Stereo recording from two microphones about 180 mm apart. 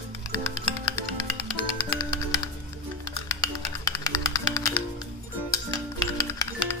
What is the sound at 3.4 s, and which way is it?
Music, 20° left (ahead or behind).